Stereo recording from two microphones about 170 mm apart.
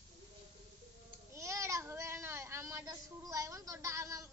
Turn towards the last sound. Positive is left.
turn(degrees=-20)  # may be behind; listen again after turning